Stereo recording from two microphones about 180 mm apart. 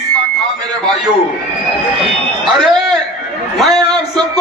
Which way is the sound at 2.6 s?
Centre (ahead or behind).